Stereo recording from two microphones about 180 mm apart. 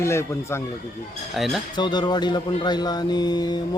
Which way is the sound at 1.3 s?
Centre (ahead or behind).